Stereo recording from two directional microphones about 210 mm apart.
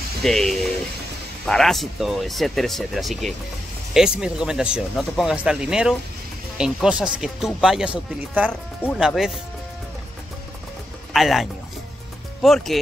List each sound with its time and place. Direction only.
0.2 s speech: centre (ahead or behind)
11.1 s speech: centre (ahead or behind)